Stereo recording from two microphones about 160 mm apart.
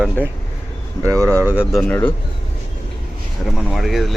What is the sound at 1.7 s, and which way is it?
Speech, 10° left (ahead or behind).